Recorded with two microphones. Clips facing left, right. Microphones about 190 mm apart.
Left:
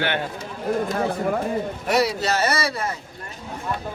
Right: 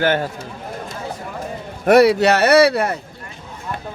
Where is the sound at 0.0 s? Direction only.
40° right (ahead or behind).